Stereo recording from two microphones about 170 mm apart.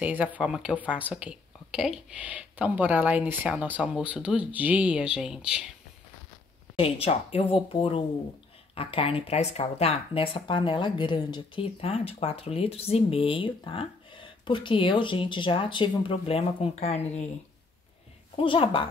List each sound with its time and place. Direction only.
0.0 s speech: 10° right (ahead or behind)
6.8 s speech: 35° left (ahead or behind)
18.3 s speech: 30° left (ahead or behind)